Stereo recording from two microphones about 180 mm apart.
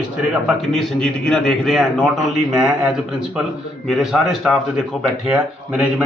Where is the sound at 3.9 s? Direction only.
Centre (ahead or behind).